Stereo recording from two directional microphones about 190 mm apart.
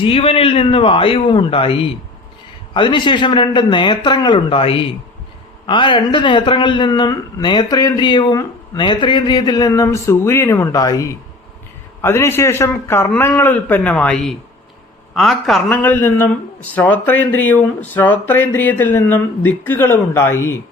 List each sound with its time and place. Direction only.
0.0 s a man's voice: 30° left (ahead or behind); by 20.6 s 15° left (ahead or behind)